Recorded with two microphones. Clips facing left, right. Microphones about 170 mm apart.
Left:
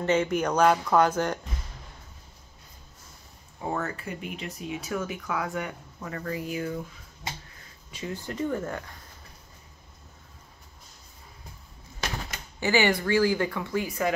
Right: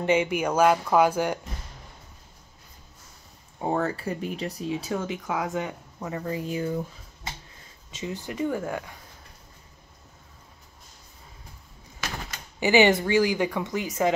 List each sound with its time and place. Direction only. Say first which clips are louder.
0.0 s speech: right 1 dB; 10° right (ahead or behind)
3.6 s speech: right 5 dB; 30° right (ahead or behind)
7.9 s speech: right 1 dB; 20° right (ahead or behind)
12.5 s speech: right 5 dB; 15° right (ahead or behind)